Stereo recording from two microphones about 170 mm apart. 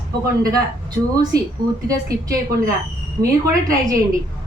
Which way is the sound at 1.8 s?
20° right (ahead or behind).